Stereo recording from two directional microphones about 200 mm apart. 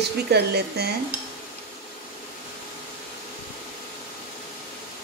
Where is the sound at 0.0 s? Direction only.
55° right (ahead or behind).